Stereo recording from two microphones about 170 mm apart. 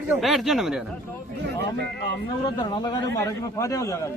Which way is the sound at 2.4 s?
25° left (ahead or behind).